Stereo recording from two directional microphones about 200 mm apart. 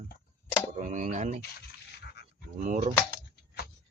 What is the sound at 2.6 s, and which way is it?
Speech, 40° right (ahead or behind).